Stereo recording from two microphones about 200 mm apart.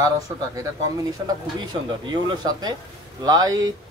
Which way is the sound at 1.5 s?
20° right (ahead or behind).